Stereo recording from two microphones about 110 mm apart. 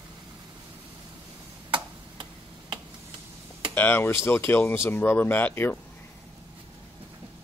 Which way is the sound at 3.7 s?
20° left (ahead or behind).